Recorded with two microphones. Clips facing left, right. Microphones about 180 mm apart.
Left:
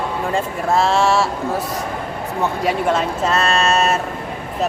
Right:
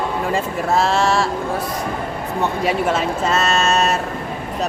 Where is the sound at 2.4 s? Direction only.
Centre (ahead or behind).